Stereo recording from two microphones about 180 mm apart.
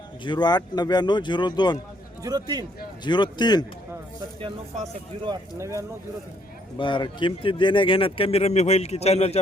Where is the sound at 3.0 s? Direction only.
25° left (ahead or behind).